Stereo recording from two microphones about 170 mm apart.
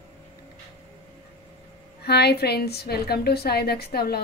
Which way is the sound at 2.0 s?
75° left (ahead or behind).